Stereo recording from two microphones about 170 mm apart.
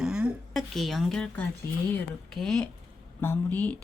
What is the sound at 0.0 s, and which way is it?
A woman's voice, 5° right (ahead or behind).